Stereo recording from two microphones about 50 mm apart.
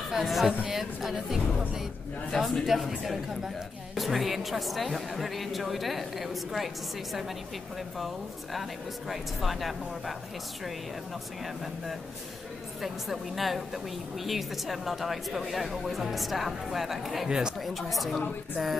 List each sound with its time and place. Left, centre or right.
0.1 s a woman's voice: centre
9.1 s a woman's voice: centre
12.8 s a woman's voice: centre
17.3 s speech: centre
17.6 s a woman's voice: centre